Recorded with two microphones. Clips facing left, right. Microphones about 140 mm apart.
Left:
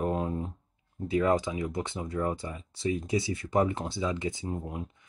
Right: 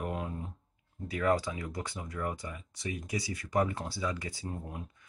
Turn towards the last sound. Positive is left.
turn(degrees=20)  # may be behind; listen again after turning